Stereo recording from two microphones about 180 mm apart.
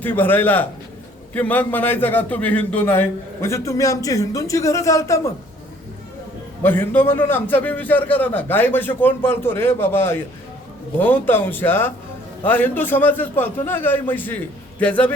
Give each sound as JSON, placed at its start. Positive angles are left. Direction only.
{"t": 0.0, "sound": "a man's voice", "side_deg": 10}
{"t": 6.6, "sound": "a man's voice", "side_deg": 10}